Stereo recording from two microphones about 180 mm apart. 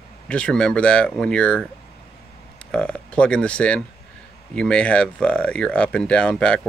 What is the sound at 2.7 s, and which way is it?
Speech, 5° left (ahead or behind).